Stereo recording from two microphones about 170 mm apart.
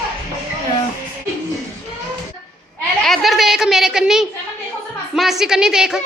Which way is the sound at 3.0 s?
Centre (ahead or behind).